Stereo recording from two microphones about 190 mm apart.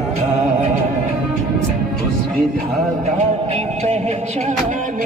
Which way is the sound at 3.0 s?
35° right (ahead or behind).